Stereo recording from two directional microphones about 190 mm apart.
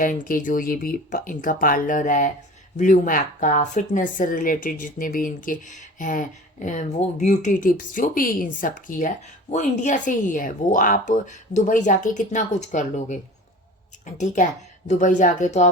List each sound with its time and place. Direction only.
0.0 s speech: 45° left (ahead or behind)